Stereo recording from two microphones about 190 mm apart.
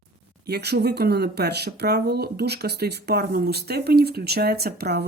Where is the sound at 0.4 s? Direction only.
60° right (ahead or behind).